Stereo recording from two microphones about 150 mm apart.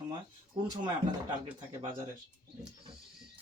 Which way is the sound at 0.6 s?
30° right (ahead or behind).